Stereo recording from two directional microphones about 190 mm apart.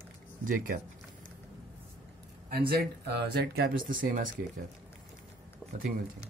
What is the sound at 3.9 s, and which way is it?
Speech, 45° right (ahead or behind).